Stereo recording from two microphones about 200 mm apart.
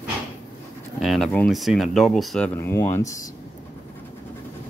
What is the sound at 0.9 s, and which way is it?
Speech, centre (ahead or behind).